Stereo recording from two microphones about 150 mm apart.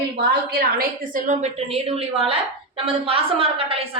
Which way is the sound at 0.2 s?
70° right (ahead or behind).